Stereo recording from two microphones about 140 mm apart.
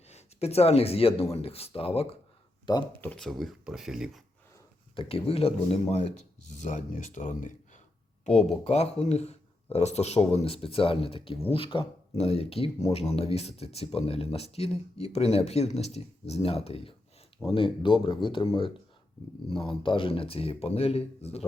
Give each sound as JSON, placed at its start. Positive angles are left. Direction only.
{"t": 0.1, "sound": "speech", "side_deg": 50}
{"t": 2.7, "sound": "speech", "side_deg": 30}
{"t": 3.0, "sound": "speech", "side_deg": 5}
{"t": 4.9, "sound": "speech", "side_deg": 40}
{"t": 8.2, "sound": "speech", "side_deg": 55}